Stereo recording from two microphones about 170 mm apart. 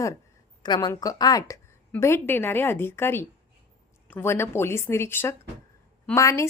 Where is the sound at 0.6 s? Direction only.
25° left (ahead or behind).